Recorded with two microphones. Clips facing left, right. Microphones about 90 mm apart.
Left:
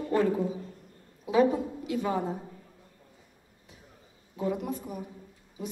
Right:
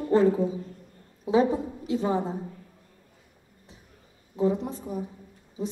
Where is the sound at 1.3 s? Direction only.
30° right (ahead or behind).